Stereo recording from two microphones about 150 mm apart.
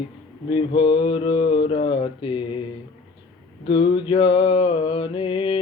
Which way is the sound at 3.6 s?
30° left (ahead or behind).